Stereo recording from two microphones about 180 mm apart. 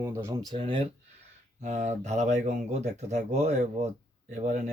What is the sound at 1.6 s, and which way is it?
Speech, 40° right (ahead or behind).